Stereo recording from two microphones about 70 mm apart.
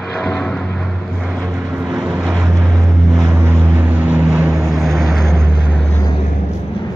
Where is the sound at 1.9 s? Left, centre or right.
Centre.